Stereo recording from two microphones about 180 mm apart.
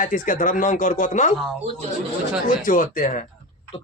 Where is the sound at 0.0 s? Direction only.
45° left (ahead or behind).